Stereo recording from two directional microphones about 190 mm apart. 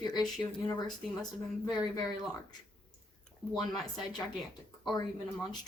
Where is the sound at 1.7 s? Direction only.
20° left (ahead or behind).